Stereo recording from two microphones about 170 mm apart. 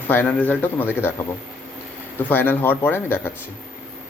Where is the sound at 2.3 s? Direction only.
10° left (ahead or behind).